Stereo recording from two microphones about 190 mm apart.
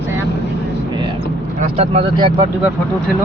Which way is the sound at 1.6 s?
35° right (ahead or behind).